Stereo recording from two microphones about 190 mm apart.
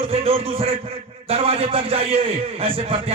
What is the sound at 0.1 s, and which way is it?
A man's voice, 30° right (ahead or behind).